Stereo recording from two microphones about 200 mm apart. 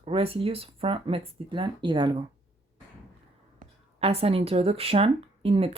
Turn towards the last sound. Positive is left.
turn(degrees=-30)  # may be behind; listen again after turning